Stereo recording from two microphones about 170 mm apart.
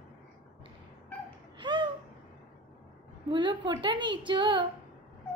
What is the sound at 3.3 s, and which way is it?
A woman's voice, 30° right (ahead or behind).